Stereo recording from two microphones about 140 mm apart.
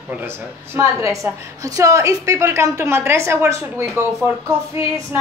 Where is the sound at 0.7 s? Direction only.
20° right (ahead or behind).